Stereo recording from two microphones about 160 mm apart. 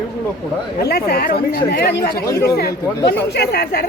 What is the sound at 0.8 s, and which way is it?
A woman's voice, 80° left.